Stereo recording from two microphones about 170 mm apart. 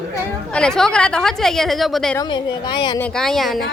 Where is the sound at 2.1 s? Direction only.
25° left (ahead or behind).